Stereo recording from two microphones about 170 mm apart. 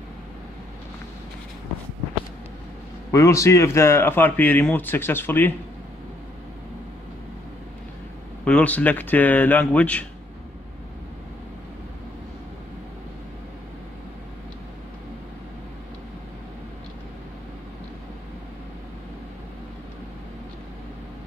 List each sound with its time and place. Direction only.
3.1 s speech: 20° left (ahead or behind)
8.5 s speech: 10° left (ahead or behind)